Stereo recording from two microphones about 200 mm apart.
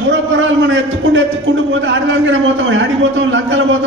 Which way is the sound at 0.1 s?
70° right (ahead or behind).